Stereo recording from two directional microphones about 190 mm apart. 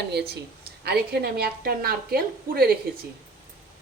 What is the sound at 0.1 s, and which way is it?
A woman's voice, 60° right (ahead or behind).